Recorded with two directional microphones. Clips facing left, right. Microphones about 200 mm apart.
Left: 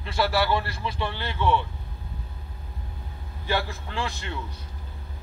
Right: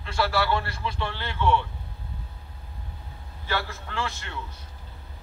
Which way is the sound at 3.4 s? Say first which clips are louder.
Left 3 dB; 15° left (ahead or behind).